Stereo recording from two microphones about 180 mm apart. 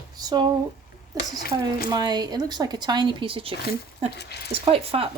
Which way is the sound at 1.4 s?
55° left (ahead or behind).